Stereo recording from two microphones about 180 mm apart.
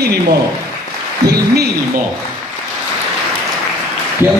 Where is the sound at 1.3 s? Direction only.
60° right (ahead or behind).